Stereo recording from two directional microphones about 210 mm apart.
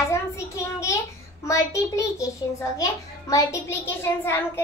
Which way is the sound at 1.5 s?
15° left (ahead or behind).